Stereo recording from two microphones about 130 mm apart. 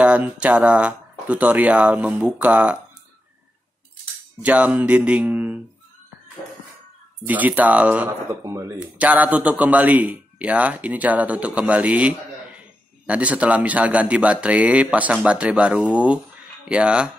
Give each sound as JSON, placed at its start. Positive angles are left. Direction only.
{"t": 0.0, "sound": "a man's voice", "side_deg": -10}
{"t": 4.4, "sound": "a man's voice", "side_deg": -10}
{"t": 7.2, "sound": "a man's voice", "side_deg": -10}
{"t": 8.5, "sound": "speech", "side_deg": -25}
{"t": 8.7, "sound": "a man's voice", "side_deg": -10}